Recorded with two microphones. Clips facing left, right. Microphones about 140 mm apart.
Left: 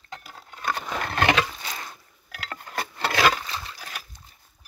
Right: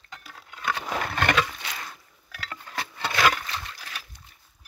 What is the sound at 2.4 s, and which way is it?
Clock, 45° left (ahead or behind).